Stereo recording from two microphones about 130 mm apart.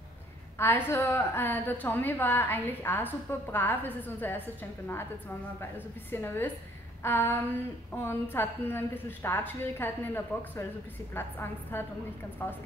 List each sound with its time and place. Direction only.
0.6 s a woman's voice: 15° left (ahead or behind)
6.1 s a woman's voice: 15° left (ahead or behind)